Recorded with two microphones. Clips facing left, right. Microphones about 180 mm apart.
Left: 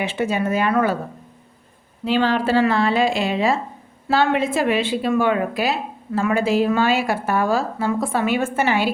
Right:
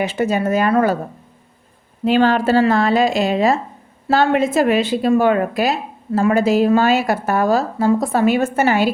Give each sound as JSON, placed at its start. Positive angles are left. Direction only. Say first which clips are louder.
{"t": 0.0, "sound": "a woman's voice", "louder": "right 3 dB", "side_deg": -40}
{"t": 2.0, "sound": "a woman's voice", "louder": "right 4 dB", "side_deg": -50}